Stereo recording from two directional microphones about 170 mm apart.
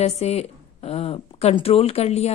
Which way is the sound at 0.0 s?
40° left (ahead or behind).